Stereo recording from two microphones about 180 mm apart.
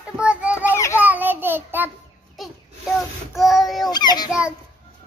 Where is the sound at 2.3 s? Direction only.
Centre (ahead or behind).